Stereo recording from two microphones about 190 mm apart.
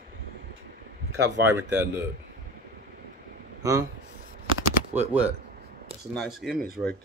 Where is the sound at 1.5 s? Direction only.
15° right (ahead or behind).